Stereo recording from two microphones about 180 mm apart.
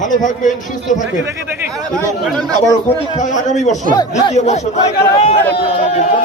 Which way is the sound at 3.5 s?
40° left (ahead or behind).